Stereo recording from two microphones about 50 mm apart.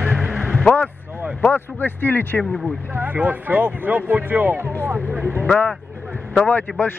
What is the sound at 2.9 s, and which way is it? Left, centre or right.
Speech, right.